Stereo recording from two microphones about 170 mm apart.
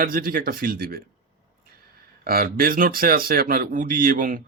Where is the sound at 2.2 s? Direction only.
60° right (ahead or behind).